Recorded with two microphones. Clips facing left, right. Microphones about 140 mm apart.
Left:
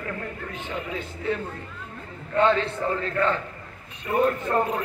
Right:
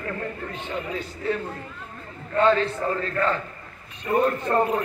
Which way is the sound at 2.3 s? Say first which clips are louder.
Right 1 dB; 20° left (ahead or behind).